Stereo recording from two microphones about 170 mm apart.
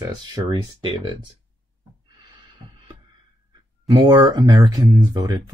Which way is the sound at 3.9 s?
25° right (ahead or behind).